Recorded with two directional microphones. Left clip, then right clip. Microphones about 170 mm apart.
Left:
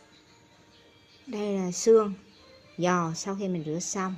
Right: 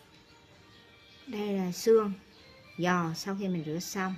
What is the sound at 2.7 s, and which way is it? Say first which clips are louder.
A woman's voice: left 3 dB; 10° left (ahead or behind).